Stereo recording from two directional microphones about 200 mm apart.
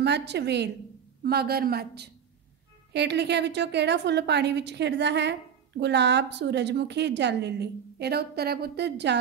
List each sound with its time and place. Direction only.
0.0 s a woman's voice: 60° right (ahead or behind)